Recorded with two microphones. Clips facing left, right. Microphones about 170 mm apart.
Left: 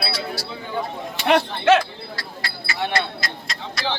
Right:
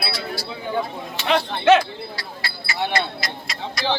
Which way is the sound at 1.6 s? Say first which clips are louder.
Right 3 dB; centre (ahead or behind).